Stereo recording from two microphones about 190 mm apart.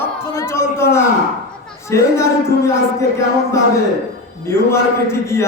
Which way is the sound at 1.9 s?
15° left (ahead or behind).